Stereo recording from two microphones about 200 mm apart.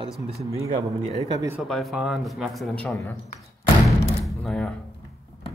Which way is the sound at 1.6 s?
Centre (ahead or behind).